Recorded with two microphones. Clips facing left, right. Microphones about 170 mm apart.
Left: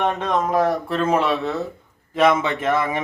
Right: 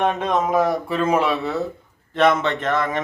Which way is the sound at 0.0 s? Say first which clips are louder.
Right 1 dB; 5° right (ahead or behind).